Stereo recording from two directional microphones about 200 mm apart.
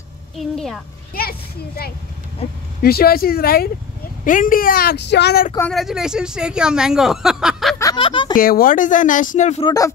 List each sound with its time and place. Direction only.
0.4 s speech: centre (ahead or behind)
2.8 s speech: 50° left (ahead or behind)
5.6 s speech: centre (ahead or behind)
7.8 s a sound: 25° left (ahead or behind)
8.4 s speech: 45° left (ahead or behind)
9.7 s speech: 15° left (ahead or behind)